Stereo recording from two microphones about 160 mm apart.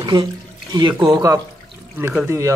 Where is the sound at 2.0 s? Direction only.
5° right (ahead or behind).